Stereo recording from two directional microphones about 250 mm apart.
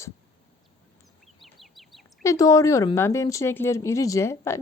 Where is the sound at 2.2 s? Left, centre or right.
Centre.